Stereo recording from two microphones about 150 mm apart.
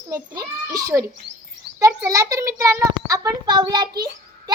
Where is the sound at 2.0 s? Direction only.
25° right (ahead or behind).